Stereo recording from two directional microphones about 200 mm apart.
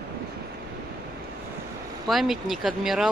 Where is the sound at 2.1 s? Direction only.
Centre (ahead or behind).